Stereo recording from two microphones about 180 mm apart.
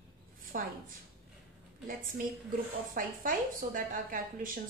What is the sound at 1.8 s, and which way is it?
A woman's voice, 50° right (ahead or behind).